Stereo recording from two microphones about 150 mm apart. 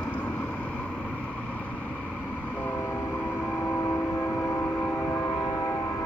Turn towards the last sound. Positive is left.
turn(degrees=15)  # may be behind; listen again after turning